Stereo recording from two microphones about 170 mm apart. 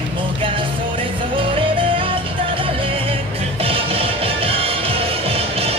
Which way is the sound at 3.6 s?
35° right (ahead or behind).